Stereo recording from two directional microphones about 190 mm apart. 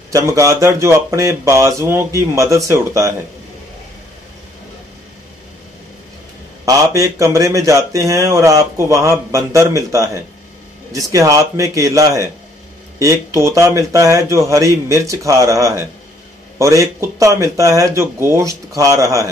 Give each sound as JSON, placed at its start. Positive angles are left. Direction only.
{"t": 0.1, "sound": "speech", "side_deg": -15}
{"t": 6.6, "sound": "speech", "side_deg": -15}